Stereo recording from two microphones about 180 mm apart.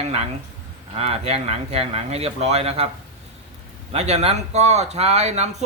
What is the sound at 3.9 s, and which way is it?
Speech, 35° right (ahead or behind).